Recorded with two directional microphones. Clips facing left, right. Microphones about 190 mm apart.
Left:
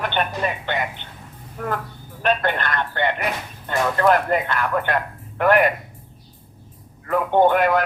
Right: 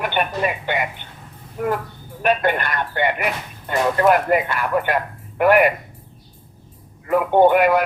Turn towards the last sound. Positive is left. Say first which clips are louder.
# right 3 dB
turn(degrees=-10)  # may be behind; listen again after turning